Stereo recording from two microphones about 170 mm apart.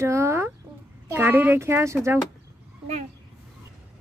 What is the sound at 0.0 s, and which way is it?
Speech, 15° right (ahead or behind).